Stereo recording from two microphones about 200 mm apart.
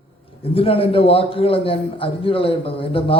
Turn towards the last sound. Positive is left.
turn(degrees=25)  # may be behind; listen again after turning